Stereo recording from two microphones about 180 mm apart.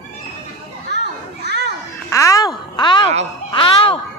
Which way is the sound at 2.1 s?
20° left (ahead or behind).